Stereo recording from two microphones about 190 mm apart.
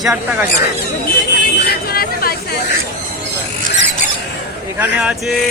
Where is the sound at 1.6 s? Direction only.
50° left (ahead or behind).